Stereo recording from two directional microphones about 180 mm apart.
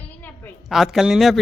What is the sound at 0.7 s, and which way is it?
Speech, centre (ahead or behind).